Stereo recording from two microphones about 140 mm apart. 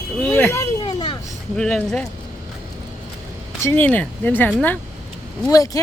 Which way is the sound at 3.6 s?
10° left (ahead or behind).